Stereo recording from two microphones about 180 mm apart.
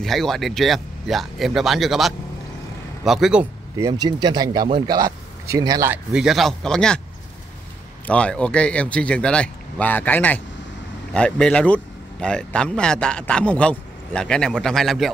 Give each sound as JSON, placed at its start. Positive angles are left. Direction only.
{"t": 0.0, "sound": "speech", "side_deg": 0}
{"t": 3.7, "sound": "speech", "side_deg": -20}
{"t": 6.1, "sound": "speech", "side_deg": 0}
{"t": 8.1, "sound": "speech", "side_deg": 5}